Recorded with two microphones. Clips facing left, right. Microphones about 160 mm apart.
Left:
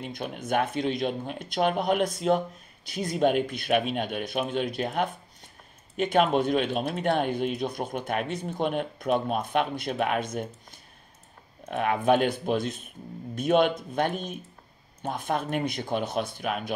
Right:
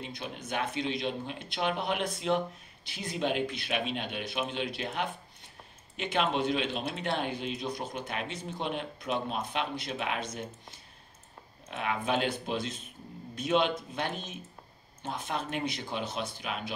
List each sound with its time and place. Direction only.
0.0 s speech: 50° left (ahead or behind)
11.7 s speech: 50° left (ahead or behind)